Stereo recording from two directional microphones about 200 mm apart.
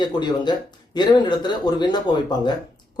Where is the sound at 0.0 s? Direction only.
20° left (ahead or behind).